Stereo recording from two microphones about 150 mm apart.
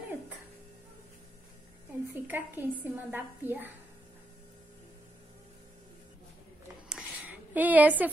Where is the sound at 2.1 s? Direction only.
15° right (ahead or behind).